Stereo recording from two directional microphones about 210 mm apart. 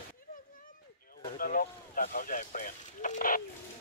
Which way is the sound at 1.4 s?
40° left (ahead or behind).